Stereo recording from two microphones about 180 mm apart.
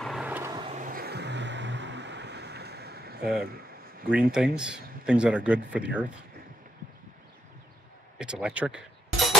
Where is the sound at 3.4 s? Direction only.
55° right (ahead or behind).